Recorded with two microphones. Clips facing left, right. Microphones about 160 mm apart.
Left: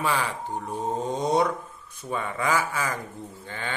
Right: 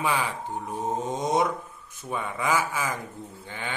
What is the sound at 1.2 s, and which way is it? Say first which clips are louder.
Mantra: left 2 dB; 20° right (ahead or behind).